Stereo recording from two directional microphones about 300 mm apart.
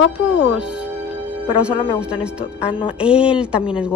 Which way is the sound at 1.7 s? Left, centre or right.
Centre.